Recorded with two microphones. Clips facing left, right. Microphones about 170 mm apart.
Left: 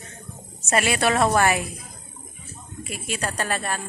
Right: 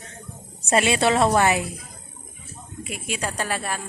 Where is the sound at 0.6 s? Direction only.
25° right (ahead or behind).